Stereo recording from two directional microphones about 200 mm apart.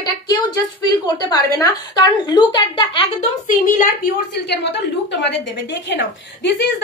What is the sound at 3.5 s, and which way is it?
A woman's voice, 40° left (ahead or behind).